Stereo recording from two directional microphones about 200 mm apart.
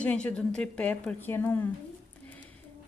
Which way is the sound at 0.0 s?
5° left (ahead or behind).